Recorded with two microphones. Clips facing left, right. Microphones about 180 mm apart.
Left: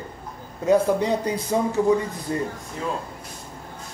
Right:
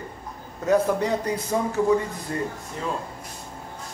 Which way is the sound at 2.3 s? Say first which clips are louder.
Left 3 dB; 20° left (ahead or behind).